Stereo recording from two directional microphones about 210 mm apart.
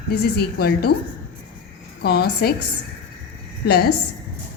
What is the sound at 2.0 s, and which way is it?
Speech, 50° left (ahead or behind).